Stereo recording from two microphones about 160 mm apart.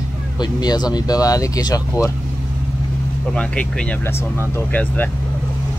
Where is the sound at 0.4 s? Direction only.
25° left (ahead or behind).